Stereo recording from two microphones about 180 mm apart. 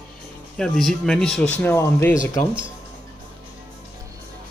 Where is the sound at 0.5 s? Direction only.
Centre (ahead or behind); by 2.5 s 20° left (ahead or behind).